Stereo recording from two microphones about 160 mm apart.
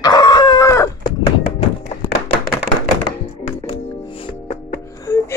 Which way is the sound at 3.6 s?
35° left (ahead or behind).